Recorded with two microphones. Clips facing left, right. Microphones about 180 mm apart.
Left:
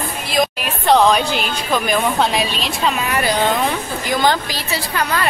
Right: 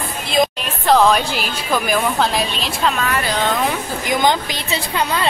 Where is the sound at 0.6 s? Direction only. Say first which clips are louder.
Left 3 dB; centre (ahead or behind).